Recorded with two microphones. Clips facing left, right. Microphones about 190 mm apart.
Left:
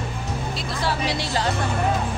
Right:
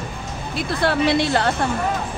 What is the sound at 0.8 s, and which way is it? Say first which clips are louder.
Speech: right 8 dB; 60° right (ahead or behind).